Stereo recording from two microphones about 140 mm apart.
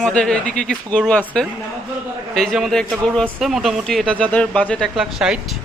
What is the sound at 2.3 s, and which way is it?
Speech, centre (ahead or behind).